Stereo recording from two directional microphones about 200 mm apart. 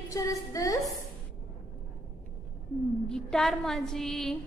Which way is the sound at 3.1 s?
5° left (ahead or behind).